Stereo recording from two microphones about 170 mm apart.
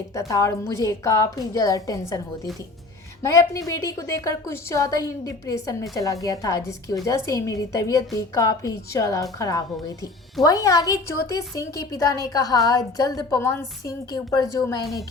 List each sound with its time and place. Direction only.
0.1 s a woman's voice: 20° left (ahead or behind)
3.2 s a woman's voice: 20° left (ahead or behind)